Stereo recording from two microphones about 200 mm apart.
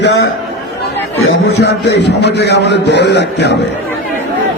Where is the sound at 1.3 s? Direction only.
60° left (ahead or behind).